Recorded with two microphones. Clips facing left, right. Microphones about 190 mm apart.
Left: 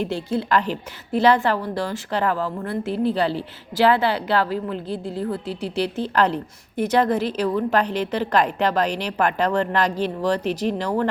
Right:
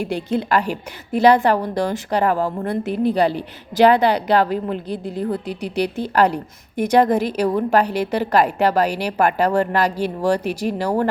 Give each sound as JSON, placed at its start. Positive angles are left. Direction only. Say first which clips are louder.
{"t": 0.0, "sound": "a woman's voice", "louder": "right 2 dB", "side_deg": -15}